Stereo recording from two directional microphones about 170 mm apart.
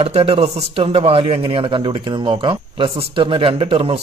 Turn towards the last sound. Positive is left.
turn(degrees=-30)  # may be behind; listen again after turning